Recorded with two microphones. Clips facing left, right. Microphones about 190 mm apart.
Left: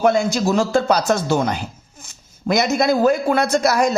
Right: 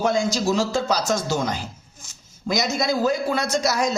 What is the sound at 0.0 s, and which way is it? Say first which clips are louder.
A man's voice: left 4 dB; 60° left (ahead or behind).